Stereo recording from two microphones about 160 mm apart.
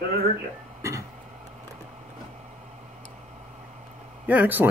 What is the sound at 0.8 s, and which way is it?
Throat clearing, 20° right (ahead or behind).